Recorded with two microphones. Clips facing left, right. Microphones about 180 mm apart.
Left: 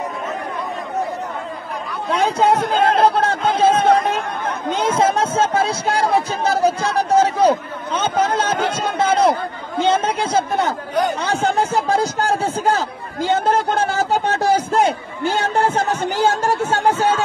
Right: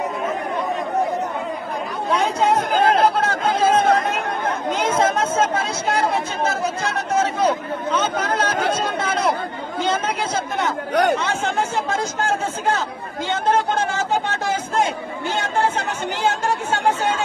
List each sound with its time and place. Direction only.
2.0 s chatter: 30° left (ahead or behind)
4.6 s speech: 30° left (ahead or behind)
10.9 s speech: 70° right (ahead or behind)
11.1 s a man's voice: 35° left (ahead or behind)